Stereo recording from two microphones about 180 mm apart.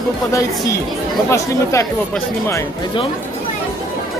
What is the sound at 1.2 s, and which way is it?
Speech, 15° left (ahead or behind).